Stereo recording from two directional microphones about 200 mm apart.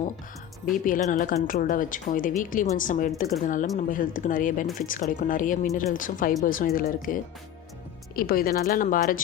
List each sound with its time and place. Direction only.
0.6 s speech: 40° left (ahead or behind)